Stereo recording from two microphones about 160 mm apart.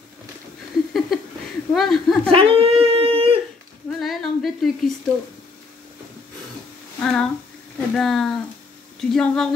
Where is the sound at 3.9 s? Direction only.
Centre (ahead or behind).